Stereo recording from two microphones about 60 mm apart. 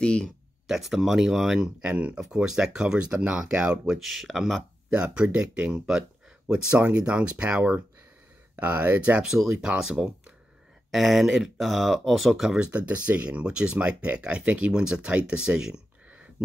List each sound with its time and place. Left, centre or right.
0.0 s speech: centre
0.7 s speech: centre
1.8 s speech: right
2.2 s speech: centre
4.0 s speech: centre
4.9 s speech: centre
9.2 s speech: centre
12.4 s speech: centre